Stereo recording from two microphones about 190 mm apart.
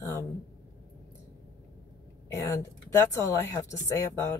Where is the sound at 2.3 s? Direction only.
15° left (ahead or behind).